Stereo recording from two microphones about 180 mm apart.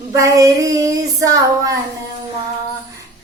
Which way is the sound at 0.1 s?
15° right (ahead or behind).